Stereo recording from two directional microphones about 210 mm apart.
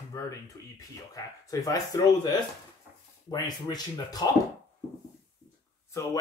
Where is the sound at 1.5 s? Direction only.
15° left (ahead or behind).